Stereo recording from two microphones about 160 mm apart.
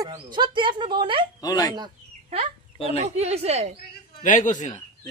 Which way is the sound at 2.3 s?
40° right (ahead or behind).